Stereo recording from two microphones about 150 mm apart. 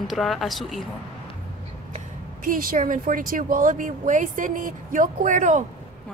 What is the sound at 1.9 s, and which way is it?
Speech, 55° right (ahead or behind).